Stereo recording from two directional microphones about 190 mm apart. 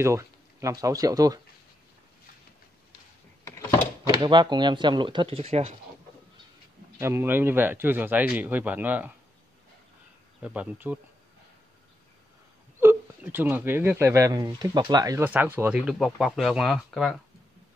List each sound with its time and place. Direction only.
0.0 s speech: 15° right (ahead or behind)
3.4 s door: 15° left (ahead or behind)
4.2 s speech: 25° right (ahead or behind)
7.0 s speech: 15° right (ahead or behind)
10.4 s speech: 5° right (ahead or behind)
12.8 s speech: 10° right (ahead or behind)